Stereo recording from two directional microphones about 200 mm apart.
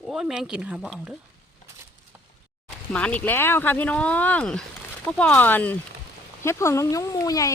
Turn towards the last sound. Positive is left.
turn(degrees=15)  # may be behind; listen again after turning